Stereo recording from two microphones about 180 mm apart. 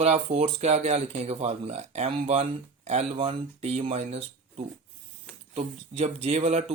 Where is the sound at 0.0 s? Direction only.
35° right (ahead or behind).